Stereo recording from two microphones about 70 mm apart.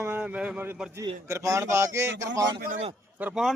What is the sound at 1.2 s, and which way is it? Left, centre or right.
A man's voice, right.